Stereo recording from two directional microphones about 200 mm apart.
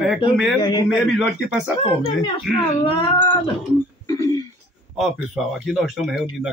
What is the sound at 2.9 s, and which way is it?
Cat, 25° left (ahead or behind).